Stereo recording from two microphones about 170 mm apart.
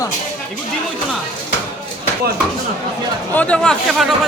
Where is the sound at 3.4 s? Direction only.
5° left (ahead or behind).